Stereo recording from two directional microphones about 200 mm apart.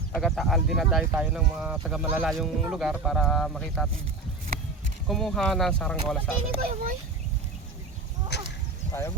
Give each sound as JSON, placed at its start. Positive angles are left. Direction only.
{"t": 0.1, "sound": "speech", "side_deg": 0}
{"t": 5.0, "sound": "speech", "side_deg": 0}
{"t": 8.3, "sound": "a sound", "side_deg": 55}
{"t": 8.9, "sound": "speech", "side_deg": 15}